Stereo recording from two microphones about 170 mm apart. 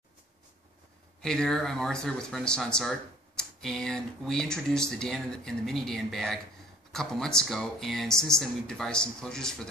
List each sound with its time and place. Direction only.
1.2 s speech: 5° left (ahead or behind)